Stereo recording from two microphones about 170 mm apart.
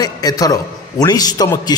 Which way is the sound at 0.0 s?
20° left (ahead or behind).